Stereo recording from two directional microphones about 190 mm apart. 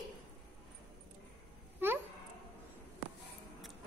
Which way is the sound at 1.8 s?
10° right (ahead or behind).